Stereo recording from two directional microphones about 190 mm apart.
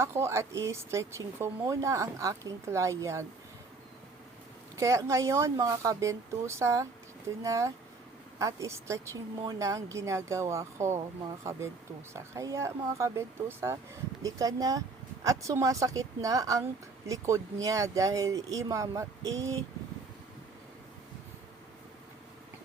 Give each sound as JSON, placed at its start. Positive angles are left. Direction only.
{"t": 0.0, "sound": "speech", "side_deg": -15}
{"t": 4.8, "sound": "speech", "side_deg": -15}
{"t": 12.1, "sound": "speech", "side_deg": -15}